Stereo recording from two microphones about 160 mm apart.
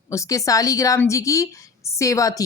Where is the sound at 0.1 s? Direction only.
20° left (ahead or behind).